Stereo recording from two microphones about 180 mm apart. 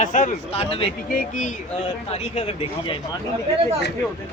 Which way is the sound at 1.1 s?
45° left (ahead or behind).